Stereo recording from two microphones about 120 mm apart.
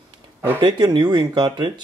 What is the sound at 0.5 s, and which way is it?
Speech, 40° right (ahead or behind).